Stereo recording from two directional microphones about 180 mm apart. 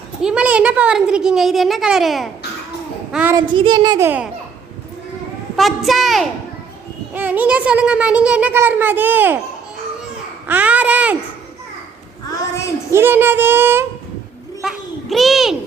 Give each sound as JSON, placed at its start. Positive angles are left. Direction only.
{"t": 0.2, "sound": "a child's voice", "side_deg": -5}
{"t": 3.3, "sound": "child singing", "side_deg": -25}
{"t": 5.5, "sound": "a child's voice", "side_deg": 0}
{"t": 10.4, "sound": "babbling", "side_deg": -10}
{"t": 12.9, "sound": "a child's voice", "side_deg": -10}
{"t": 14.6, "sound": "a sound", "side_deg": 0}